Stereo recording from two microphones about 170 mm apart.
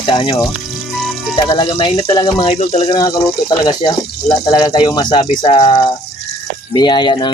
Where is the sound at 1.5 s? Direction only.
30° left (ahead or behind).